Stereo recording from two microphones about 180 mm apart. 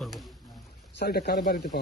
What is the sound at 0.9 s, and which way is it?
Speech, 60° left (ahead or behind).